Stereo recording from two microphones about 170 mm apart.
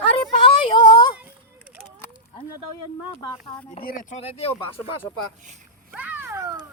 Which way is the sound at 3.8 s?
55° left (ahead or behind).